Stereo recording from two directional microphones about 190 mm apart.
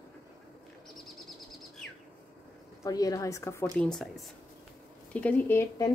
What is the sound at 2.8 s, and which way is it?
Speech, 20° left (ahead or behind).